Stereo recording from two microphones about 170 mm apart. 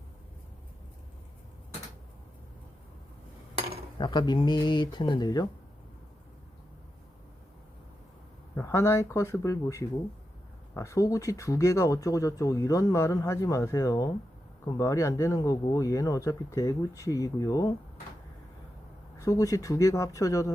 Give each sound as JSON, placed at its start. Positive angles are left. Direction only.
{"t": 3.9, "sound": "speech", "side_deg": 25}
{"t": 8.5, "sound": "speech", "side_deg": 15}
{"t": 19.2, "sound": "speech", "side_deg": 20}